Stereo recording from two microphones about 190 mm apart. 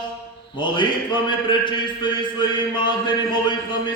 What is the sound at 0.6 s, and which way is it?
A man's voice, 25° left (ahead or behind).